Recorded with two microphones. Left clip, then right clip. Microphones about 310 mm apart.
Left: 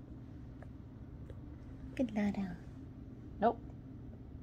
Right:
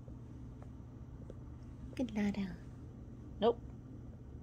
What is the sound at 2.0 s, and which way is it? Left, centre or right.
Speech, centre.